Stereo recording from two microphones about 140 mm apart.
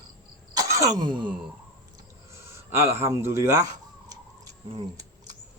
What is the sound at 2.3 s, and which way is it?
Speech, 20° right (ahead or behind).